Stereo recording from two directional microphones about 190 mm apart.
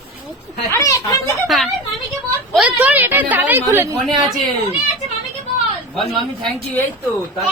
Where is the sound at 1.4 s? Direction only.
Centre (ahead or behind); by 4.0 s 15° right (ahead or behind).